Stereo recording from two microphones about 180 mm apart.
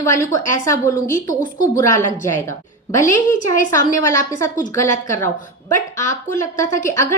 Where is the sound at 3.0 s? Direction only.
45° left (ahead or behind).